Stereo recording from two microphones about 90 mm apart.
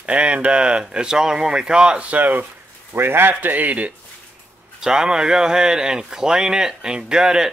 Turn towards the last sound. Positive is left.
turn(degrees=-5)  # may be behind; listen again after turning